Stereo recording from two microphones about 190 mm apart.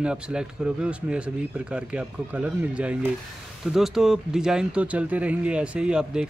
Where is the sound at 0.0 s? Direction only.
5° right (ahead or behind).